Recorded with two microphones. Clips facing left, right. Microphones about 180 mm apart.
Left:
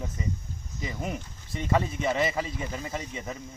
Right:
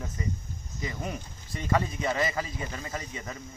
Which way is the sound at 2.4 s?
20° left (ahead or behind).